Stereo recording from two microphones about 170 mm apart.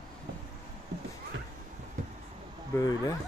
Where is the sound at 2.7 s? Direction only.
20° left (ahead or behind).